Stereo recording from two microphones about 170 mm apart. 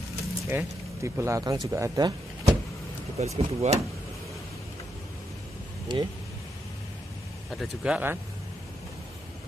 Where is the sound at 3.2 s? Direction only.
40° right (ahead or behind).